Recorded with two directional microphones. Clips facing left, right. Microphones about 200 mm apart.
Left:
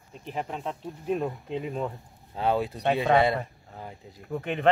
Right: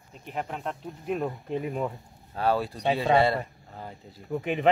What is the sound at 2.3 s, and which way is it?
Speech, 20° left (ahead or behind).